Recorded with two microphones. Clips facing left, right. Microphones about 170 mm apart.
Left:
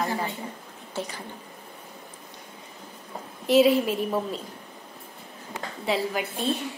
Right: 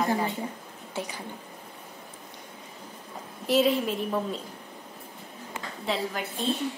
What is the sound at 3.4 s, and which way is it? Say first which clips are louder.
Speech: left 4 dB; 5° left (ahead or behind).